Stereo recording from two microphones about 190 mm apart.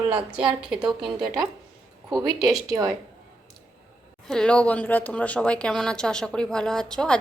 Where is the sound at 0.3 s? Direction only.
5° right (ahead or behind).